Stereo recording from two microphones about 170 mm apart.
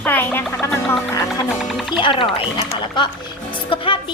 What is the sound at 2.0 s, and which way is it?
A woman's voice, 30° left (ahead or behind).